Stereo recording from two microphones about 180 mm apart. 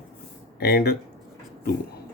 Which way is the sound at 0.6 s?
60° left (ahead or behind).